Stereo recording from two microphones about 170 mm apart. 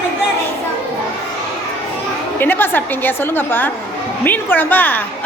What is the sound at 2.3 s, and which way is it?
A woman's voice, 10° left (ahead or behind).